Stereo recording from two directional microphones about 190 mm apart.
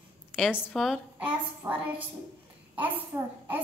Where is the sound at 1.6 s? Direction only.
10° right (ahead or behind).